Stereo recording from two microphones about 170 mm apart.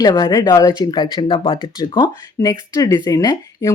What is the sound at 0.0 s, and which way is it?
Speech, 25° left (ahead or behind).